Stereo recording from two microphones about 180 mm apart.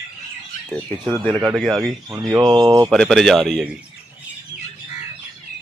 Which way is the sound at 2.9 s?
Centre (ahead or behind).